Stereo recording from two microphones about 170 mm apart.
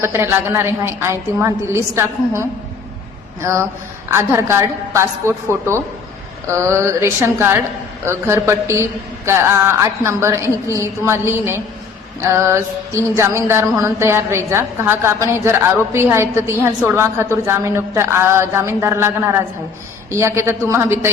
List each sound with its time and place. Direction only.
0.0 s music: 15° right (ahead or behind)